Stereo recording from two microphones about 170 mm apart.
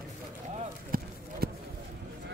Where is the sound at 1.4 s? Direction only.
65° right (ahead or behind).